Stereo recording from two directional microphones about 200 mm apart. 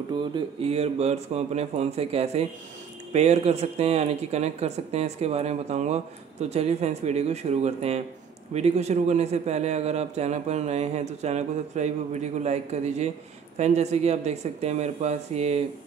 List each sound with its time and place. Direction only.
0.1 s a man's voice: 25° right (ahead or behind)